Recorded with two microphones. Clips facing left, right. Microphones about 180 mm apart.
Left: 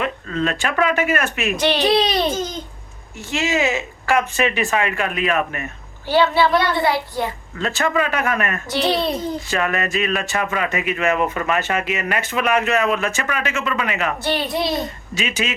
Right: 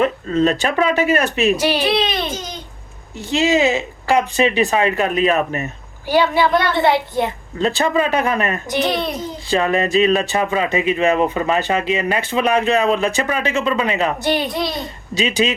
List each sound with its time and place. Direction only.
0.0 s speech: 40° right (ahead or behind)
1.5 s a woman's voice: 10° right (ahead or behind)
1.8 s speech: 40° left (ahead or behind)
3.2 s speech: 35° right (ahead or behind)
6.1 s a woman's voice: 15° right (ahead or behind)
8.9 s speech: 30° left (ahead or behind)
9.5 s speech: 30° right (ahead or behind)
14.2 s a woman's voice: 15° right (ahead or behind)
15.1 s speech: 35° right (ahead or behind)